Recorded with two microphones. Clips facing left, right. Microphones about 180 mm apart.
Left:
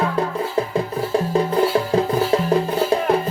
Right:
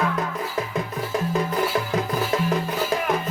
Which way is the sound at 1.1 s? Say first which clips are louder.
Left 5 dB; 30° left (ahead or behind).